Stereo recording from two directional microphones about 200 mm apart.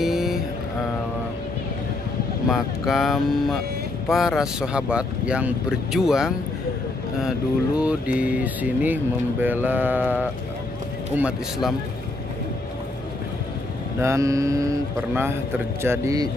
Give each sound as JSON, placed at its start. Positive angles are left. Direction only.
{"t": 0.0, "sound": "vehicle", "side_deg": 0}
{"t": 2.5, "sound": "speech", "side_deg": 0}
{"t": 14.0, "sound": "speech", "side_deg": -15}